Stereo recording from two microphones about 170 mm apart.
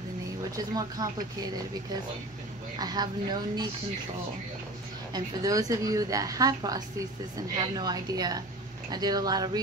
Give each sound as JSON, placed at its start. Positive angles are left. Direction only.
{"t": 0.7, "sound": "a woman's voice", "side_deg": -20}
{"t": 2.8, "sound": "a woman's voice", "side_deg": -25}
{"t": 5.1, "sound": "a woman's voice", "side_deg": -20}